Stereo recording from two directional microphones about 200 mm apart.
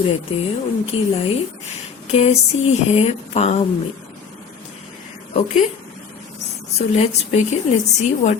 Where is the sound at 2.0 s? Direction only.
30° left (ahead or behind).